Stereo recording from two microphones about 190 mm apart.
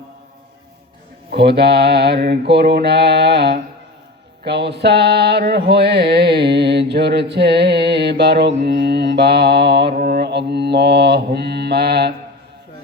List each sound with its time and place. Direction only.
1.3 s music: 60° right (ahead or behind)